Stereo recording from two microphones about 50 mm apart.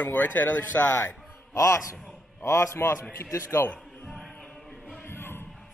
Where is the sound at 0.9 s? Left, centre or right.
Left.